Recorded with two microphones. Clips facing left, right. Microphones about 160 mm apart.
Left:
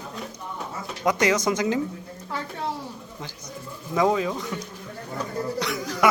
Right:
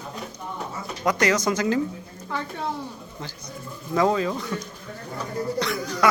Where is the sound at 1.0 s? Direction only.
20° left (ahead or behind).